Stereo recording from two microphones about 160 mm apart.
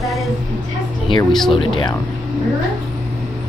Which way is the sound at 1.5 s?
30° left (ahead or behind).